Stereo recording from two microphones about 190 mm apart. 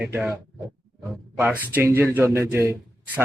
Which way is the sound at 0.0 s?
5° right (ahead or behind).